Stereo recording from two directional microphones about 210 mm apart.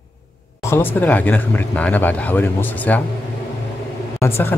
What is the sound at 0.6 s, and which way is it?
Speech, 10° left (ahead or behind).